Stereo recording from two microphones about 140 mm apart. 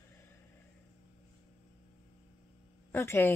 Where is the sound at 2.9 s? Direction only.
15° left (ahead or behind).